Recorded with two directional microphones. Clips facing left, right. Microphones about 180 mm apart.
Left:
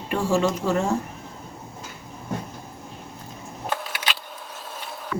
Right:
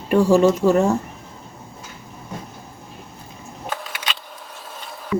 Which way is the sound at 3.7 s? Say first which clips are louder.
Left 1 dB; centre (ahead or behind).